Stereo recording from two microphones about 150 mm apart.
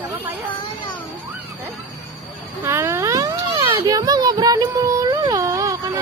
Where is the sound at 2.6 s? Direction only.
15° right (ahead or behind).